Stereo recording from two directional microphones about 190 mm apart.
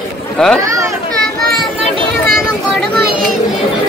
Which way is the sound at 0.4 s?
5° left (ahead or behind).